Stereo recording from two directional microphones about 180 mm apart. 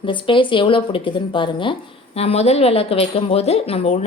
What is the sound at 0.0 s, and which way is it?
A woman's voice, 30° left (ahead or behind).